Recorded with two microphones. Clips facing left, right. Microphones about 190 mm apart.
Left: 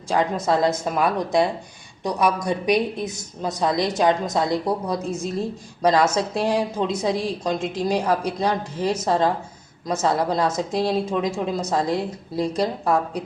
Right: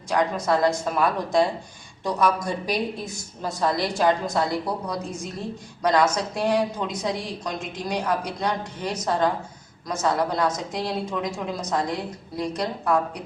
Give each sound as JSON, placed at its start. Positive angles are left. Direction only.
{"t": 0.1, "sound": "a woman's voice", "side_deg": 25}